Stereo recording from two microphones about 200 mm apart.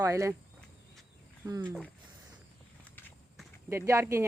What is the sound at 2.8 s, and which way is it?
Walk, 5° left (ahead or behind).